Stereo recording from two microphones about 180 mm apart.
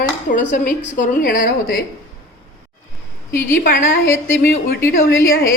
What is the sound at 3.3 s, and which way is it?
Speech, 15° left (ahead or behind).